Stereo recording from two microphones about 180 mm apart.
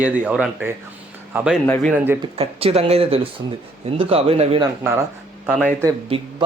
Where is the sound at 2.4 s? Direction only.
30° right (ahead or behind).